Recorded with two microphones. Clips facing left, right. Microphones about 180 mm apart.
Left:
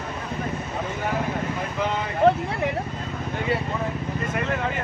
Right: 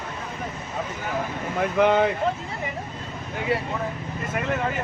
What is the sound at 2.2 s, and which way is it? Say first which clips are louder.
Speech: left 7 dB; 65° left (ahead or behind).